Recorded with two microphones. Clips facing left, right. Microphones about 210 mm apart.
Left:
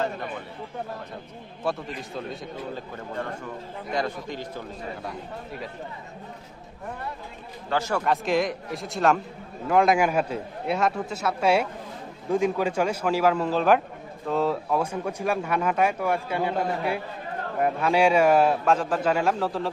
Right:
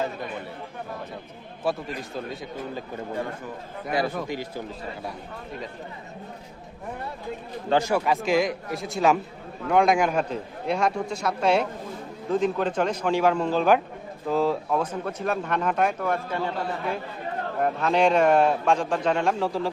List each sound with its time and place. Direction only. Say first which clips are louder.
1.6 s a man's voice: right 2 dB; centre (ahead or behind)
3.9 s a man's voice: right 3 dB; 10° right (ahead or behind)
7.7 s a man's voice: right 3 dB; 15° right (ahead or behind)